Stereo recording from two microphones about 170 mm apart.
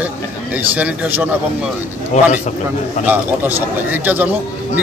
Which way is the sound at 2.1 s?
40° left (ahead or behind).